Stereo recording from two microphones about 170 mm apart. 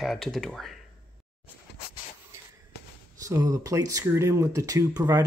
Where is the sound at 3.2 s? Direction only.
20° right (ahead or behind).